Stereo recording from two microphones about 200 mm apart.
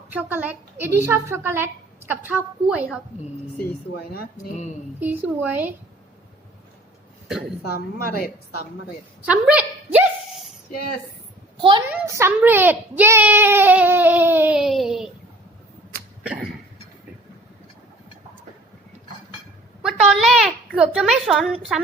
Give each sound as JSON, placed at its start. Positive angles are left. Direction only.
{"t": 0.1, "sound": "a child's voice", "side_deg": -10}
{"t": 4.4, "sound": "speech", "side_deg": 35}
{"t": 4.9, "sound": "a child's voice", "side_deg": -10}
{"t": 7.7, "sound": "a woman's voice", "side_deg": 50}
{"t": 9.2, "sound": "a sound", "side_deg": -5}
{"t": 11.9, "sound": "a child's voice", "side_deg": -15}
{"t": 16.2, "sound": "cough", "side_deg": -5}
{"t": 19.8, "sound": "a woman's voice", "side_deg": 0}